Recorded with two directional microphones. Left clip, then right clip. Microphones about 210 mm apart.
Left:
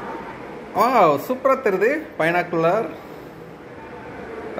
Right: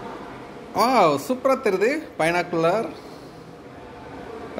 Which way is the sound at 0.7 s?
15° right (ahead or behind).